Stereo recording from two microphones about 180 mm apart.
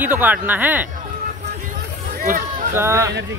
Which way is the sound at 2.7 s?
15° right (ahead or behind).